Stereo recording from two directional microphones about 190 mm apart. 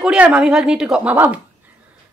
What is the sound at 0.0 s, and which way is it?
Speech, 5° right (ahead or behind).